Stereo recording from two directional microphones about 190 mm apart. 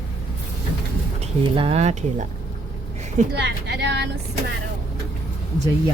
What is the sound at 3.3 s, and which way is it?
Speech, 65° right (ahead or behind).